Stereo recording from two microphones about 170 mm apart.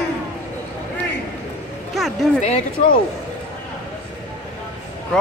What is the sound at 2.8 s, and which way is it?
Speech, 40° left (ahead or behind).